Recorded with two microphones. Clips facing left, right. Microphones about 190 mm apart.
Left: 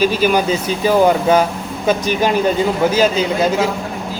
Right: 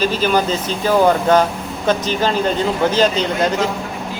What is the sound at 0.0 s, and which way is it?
Speech, 10° left (ahead or behind).